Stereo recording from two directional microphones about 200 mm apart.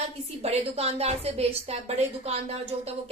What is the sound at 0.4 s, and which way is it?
Speech, 30° right (ahead or behind).